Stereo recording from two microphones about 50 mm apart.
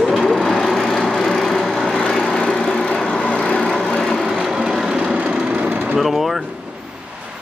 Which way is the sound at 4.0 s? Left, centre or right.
Centre.